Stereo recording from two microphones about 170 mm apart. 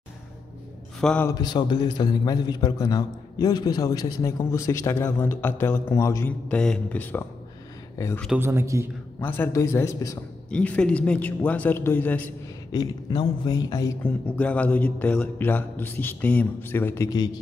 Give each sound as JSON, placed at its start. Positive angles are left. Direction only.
{"t": 1.0, "sound": "a man's voice", "side_deg": 10}
{"t": 1.3, "sound": "a man's voice", "side_deg": 25}
{"t": 6.5, "sound": "a man's voice", "side_deg": 5}
{"t": 8.4, "sound": "speech", "side_deg": -15}
{"t": 9.2, "sound": "a man's voice", "side_deg": 15}
{"t": 12.7, "sound": "a man's voice", "side_deg": 25}
{"t": 14.0, "sound": "a man's voice", "side_deg": 10}